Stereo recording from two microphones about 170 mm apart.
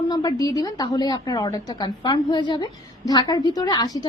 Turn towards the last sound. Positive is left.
turn(degrees=25)  # may be behind; listen again after turning